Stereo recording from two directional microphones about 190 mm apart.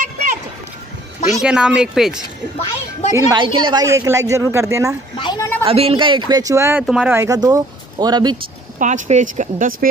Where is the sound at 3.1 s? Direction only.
25° right (ahead or behind).